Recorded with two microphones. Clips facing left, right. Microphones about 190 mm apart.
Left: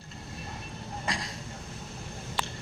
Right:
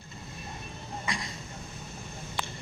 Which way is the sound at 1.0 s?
75° left (ahead or behind).